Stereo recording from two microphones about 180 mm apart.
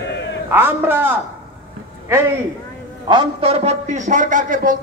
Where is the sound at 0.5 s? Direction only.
10° right (ahead or behind).